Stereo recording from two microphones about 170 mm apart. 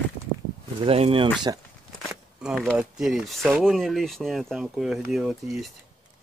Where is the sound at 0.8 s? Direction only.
35° right (ahead or behind).